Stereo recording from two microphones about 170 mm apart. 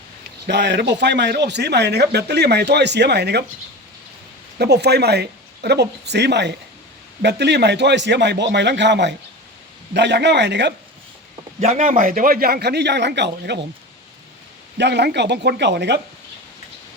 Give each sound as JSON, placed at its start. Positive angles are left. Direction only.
{"t": 0.4, "sound": "a man's voice", "side_deg": -85}
{"t": 4.5, "sound": "a man's voice", "side_deg": -75}
{"t": 11.7, "sound": "speech", "side_deg": -50}
{"t": 14.8, "sound": "a man's voice", "side_deg": -80}